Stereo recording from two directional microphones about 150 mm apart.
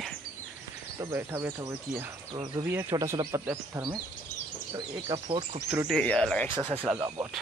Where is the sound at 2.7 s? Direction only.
15° right (ahead or behind).